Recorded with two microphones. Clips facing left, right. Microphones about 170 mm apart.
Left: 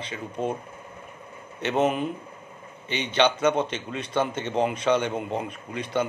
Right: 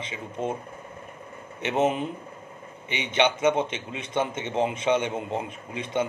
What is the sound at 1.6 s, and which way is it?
A man's voice, 25° right (ahead or behind).